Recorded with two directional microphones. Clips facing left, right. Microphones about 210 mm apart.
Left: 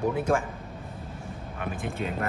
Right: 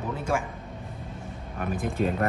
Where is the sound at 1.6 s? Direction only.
40° right (ahead or behind).